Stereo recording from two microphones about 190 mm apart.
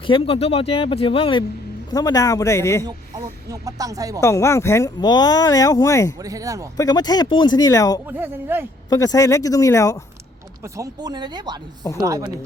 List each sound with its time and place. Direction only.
0.1 s speech: 30° left (ahead or behind); by 2.8 s 15° left (ahead or behind)
3.5 s speech: 20° right (ahead or behind)
4.2 s speech: 15° left (ahead or behind)
6.2 s speech: 20° right (ahead or behind)
6.7 s speech: 20° left (ahead or behind)
8.1 s speech: 10° right (ahead or behind)
8.9 s speech: 20° left (ahead or behind)
10.8 s speech: 20° right (ahead or behind)